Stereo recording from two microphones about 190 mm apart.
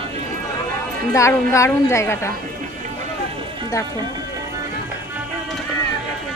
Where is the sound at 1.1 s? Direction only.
15° left (ahead or behind).